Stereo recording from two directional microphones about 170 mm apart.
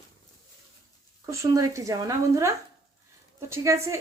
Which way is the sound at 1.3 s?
20° right (ahead or behind).